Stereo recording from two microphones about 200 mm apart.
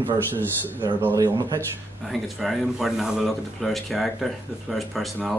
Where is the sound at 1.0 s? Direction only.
15° right (ahead or behind).